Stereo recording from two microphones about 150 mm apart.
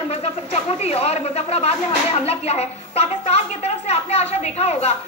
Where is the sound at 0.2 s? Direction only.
45° left (ahead or behind).